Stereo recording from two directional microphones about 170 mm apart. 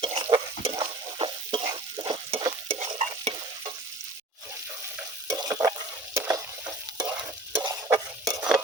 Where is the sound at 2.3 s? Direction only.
30° right (ahead or behind).